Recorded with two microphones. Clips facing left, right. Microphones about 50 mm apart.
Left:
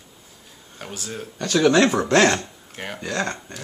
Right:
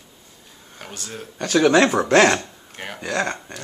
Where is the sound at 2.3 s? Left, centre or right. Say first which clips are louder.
Right 1 dB; centre.